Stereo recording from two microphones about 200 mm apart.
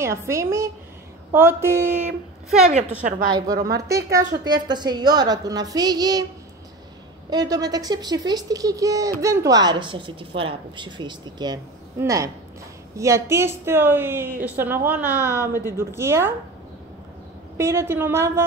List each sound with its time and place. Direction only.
0.0 s a woman's voice: 15° right (ahead or behind)
3.3 s a woman's voice: 20° right (ahead or behind)
7.2 s a woman's voice: 20° right (ahead or behind)
17.6 s a woman's voice: 15° right (ahead or behind)